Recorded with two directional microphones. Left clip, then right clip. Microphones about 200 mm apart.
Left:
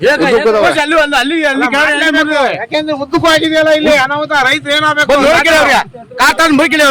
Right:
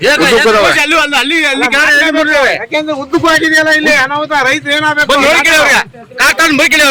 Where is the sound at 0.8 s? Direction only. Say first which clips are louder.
Right 1 dB; 65° left (ahead or behind).